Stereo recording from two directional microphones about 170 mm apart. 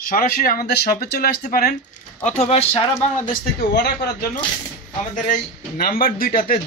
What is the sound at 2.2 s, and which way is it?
Speech, 40° left (ahead or behind).